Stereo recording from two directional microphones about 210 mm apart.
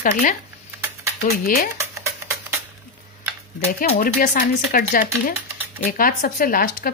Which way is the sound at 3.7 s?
40° left (ahead or behind).